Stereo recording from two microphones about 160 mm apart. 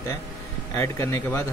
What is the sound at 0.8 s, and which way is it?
Speech, 15° left (ahead or behind).